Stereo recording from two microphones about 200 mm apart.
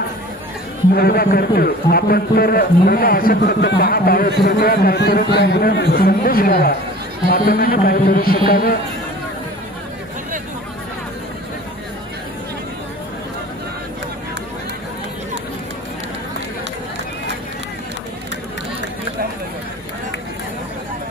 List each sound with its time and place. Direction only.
0.9 s a man's voice: 50° left (ahead or behind)